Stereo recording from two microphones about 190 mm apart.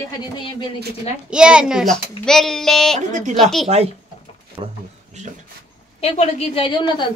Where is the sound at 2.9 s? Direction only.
40° right (ahead or behind).